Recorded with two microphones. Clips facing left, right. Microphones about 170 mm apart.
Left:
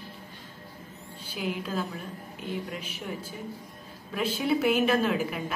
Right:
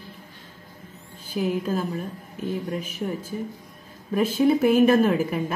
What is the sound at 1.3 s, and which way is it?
A woman's voice, 45° right (ahead or behind).